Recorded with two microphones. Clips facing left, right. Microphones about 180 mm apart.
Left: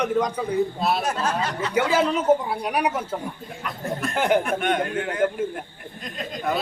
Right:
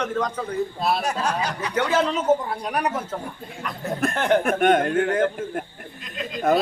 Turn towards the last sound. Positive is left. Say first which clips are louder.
# right 6 dB
turn(degrees=-45)  # may be behind; listen again after turning